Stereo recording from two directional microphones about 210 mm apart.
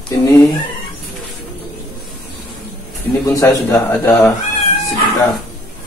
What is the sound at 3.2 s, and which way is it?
Speech, 15° left (ahead or behind).